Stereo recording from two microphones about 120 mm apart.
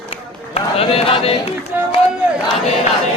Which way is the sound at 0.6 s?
55° left (ahead or behind).